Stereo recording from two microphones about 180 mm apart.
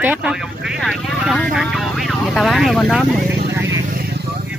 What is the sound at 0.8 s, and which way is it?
Vehicle, centre (ahead or behind).